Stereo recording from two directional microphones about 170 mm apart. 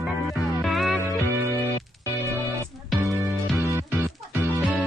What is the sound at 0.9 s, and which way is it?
Music, 15° right (ahead or behind).